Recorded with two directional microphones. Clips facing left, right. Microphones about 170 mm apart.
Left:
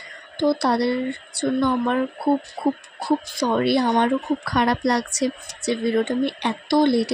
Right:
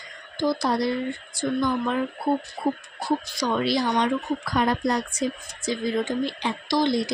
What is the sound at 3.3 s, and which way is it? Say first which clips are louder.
A woman's voice: left 5 dB; 55° left (ahead or behind).